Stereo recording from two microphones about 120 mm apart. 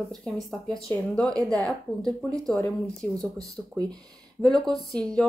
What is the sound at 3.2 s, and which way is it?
Speech, 35° right (ahead or behind).